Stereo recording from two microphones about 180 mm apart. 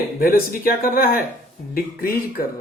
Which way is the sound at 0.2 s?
55° left (ahead or behind).